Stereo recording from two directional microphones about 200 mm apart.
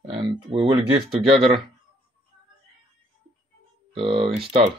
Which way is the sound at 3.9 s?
25° right (ahead or behind).